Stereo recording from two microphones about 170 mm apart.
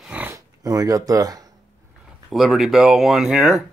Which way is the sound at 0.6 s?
20° right (ahead or behind).